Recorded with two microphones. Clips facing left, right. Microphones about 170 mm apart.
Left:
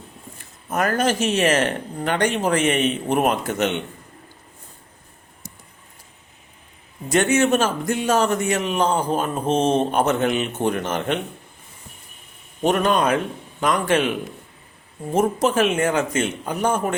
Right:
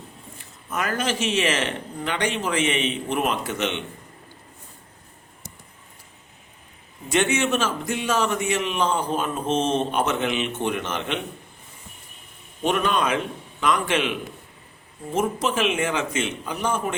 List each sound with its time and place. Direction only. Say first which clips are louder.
0.7 s a man's voice: left 5 dB; 45° left (ahead or behind)
7.1 s a man's voice: left 4 dB; 40° left (ahead or behind)
12.6 s a man's voice: left 4 dB; 45° left (ahead or behind)